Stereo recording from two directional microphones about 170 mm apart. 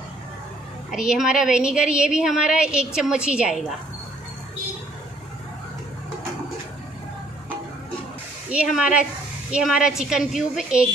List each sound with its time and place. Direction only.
0.9 s a woman's voice: 5° right (ahead or behind)
8.5 s a woman's voice: 5° right (ahead or behind)